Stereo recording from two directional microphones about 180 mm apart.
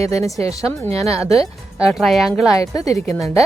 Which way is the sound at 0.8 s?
15° left (ahead or behind).